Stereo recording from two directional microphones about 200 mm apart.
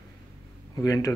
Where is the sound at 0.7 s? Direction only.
15° left (ahead or behind).